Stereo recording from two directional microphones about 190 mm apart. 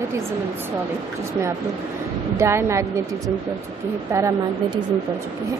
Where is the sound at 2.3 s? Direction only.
15° right (ahead or behind).